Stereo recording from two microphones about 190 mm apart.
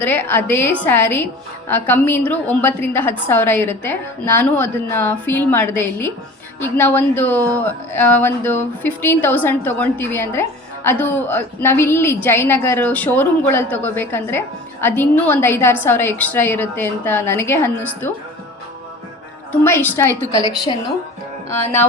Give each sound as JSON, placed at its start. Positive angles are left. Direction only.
{"t": 0.0, "sound": "a woman's voice", "side_deg": 10}
{"t": 19.5, "sound": "a woman's voice", "side_deg": 10}
{"t": 21.5, "sound": "a woman's voice", "side_deg": 15}